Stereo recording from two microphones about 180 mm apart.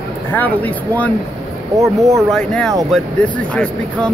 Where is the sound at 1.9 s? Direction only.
20° right (ahead or behind).